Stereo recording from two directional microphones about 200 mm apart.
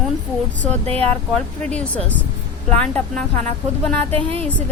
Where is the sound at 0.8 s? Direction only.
30° right (ahead or behind).